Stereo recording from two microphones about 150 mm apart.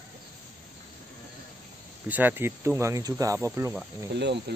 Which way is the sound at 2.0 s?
10° right (ahead or behind).